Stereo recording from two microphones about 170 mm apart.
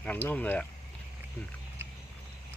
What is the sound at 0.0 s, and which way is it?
Speech, 10° left (ahead or behind).